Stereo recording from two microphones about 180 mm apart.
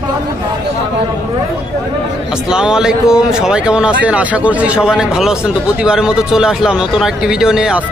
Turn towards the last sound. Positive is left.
turn(degrees=-5)  # may be behind; listen again after turning